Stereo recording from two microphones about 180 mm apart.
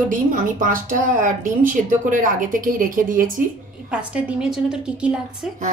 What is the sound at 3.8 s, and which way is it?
A woman's voice, 5° right (ahead or behind).